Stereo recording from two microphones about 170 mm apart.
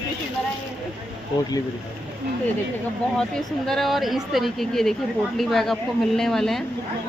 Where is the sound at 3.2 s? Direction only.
Centre (ahead or behind).